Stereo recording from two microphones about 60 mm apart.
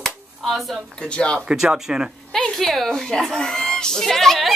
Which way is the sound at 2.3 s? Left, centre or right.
Centre.